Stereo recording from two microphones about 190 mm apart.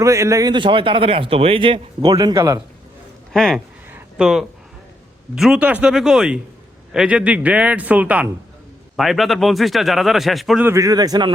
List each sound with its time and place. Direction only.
0.0 s a man's voice: 15° right (ahead or behind)
3.3 s speech: centre (ahead or behind)
3.9 s a sound: 5° right (ahead or behind)
5.3 s a man's voice: 5° right (ahead or behind)
10.7 s a man's voice: 15° right (ahead or behind)